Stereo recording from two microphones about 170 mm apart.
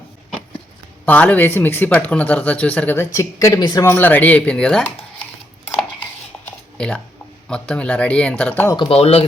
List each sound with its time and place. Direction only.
1.0 s speech: 10° left (ahead or behind); by 3.8 s 25° left (ahead or behind)
3.8 s speech: 10° left (ahead or behind)
6.4 s typing: 5° left (ahead or behind)
7.4 s speech: 5° left (ahead or behind)
8.7 s speech: 30° left (ahead or behind)